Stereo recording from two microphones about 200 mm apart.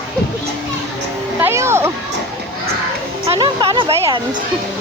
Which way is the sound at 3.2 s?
25° right (ahead or behind).